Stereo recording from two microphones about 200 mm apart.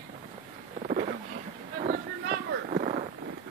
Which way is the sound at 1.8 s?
40° right (ahead or behind).